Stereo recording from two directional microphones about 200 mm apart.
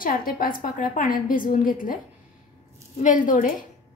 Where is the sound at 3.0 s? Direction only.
40° left (ahead or behind).